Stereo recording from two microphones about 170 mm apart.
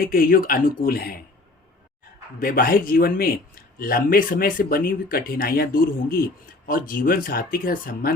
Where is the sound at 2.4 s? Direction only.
55° left (ahead or behind).